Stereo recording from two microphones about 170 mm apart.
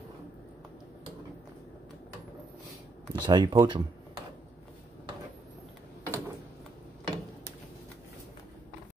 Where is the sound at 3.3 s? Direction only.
25° right (ahead or behind).